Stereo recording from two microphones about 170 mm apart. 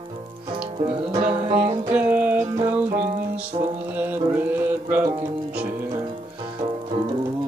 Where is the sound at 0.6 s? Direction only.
30° right (ahead or behind).